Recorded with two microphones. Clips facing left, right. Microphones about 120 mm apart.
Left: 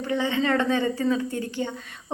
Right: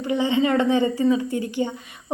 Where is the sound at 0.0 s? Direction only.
15° right (ahead or behind).